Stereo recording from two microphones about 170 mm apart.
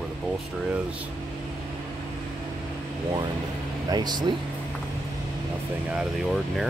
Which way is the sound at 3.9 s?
25° right (ahead or behind).